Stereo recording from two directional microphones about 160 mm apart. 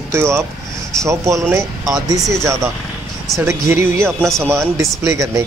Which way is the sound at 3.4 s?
15° right (ahead or behind).